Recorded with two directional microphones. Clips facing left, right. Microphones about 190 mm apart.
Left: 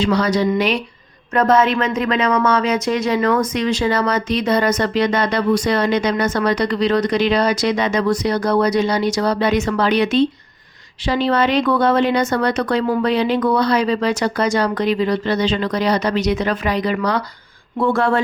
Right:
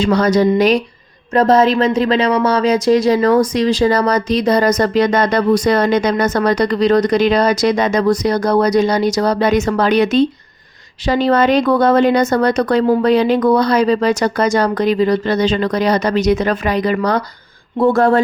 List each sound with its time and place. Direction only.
0.0 s speech: 45° right (ahead or behind)